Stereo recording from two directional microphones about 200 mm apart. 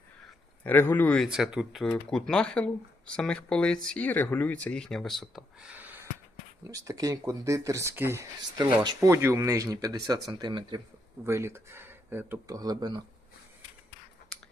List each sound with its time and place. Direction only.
0.6 s speech: 10° left (ahead or behind); by 13.0 s 20° right (ahead or behind)